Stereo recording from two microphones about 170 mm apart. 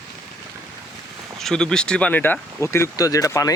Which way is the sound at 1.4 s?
5° left (ahead or behind).